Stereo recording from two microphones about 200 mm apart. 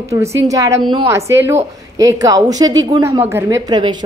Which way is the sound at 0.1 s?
15° right (ahead or behind).